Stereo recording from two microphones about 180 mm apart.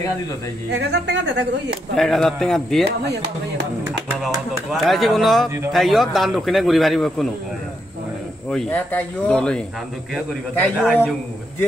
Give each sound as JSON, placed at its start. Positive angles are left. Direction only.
{"t": 0.7, "sound": "speech", "side_deg": -70}
{"t": 2.0, "sound": "speech", "side_deg": 0}
{"t": 2.8, "sound": "speech", "side_deg": -70}
{"t": 4.7, "sound": "speech", "side_deg": 0}
{"t": 8.5, "sound": "speech", "side_deg": 5}
{"t": 10.8, "sound": "speech", "side_deg": 0}